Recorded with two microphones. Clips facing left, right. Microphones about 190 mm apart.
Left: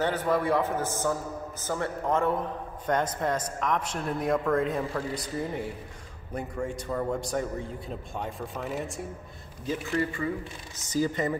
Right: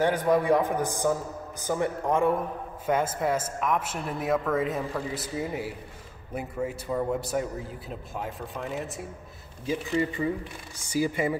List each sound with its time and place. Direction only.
0.0 s a man's voice: 15° right (ahead or behind)
9.9 s speech: 20° right (ahead or behind)
10.8 s a man's voice: 10° right (ahead or behind)